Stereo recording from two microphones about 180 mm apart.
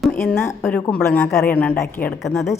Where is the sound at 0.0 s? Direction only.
5° left (ahead or behind).